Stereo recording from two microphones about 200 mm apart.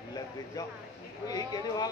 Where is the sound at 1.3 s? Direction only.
20° left (ahead or behind).